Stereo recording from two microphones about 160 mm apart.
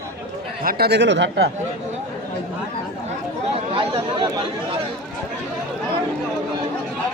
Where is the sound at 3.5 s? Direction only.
35° right (ahead or behind).